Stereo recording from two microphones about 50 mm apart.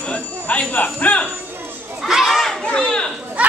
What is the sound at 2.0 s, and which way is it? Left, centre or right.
Children playing, centre.